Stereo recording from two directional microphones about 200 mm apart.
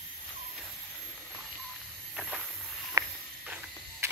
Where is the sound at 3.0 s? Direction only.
15° right (ahead or behind).